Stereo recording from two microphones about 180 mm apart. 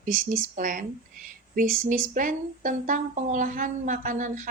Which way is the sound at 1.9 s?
45° right (ahead or behind).